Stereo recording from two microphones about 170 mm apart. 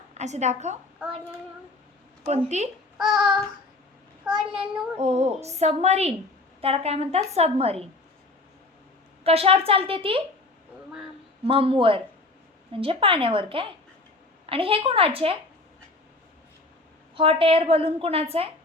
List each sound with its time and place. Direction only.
0.1 s a woman's voice: 40° right (ahead or behind)
2.5 s a woman's voice: 40° right (ahead or behind)
3.0 s a child's voice: centre (ahead or behind)
4.9 s a woman's voice: 40° right (ahead or behind)
9.2 s a woman's voice: 35° right (ahead or behind)
11.4 s a woman's voice: 30° right (ahead or behind)
17.2 s a woman's voice: 30° right (ahead or behind)